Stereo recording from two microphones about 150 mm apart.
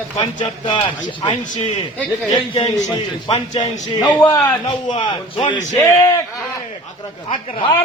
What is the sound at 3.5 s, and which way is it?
Speech, 50° left (ahead or behind).